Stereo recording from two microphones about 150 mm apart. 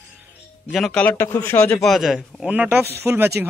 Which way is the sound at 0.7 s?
5° left (ahead or behind).